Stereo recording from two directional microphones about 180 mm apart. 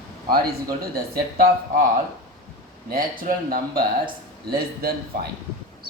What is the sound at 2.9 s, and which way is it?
A man's voice, 50° right (ahead or behind).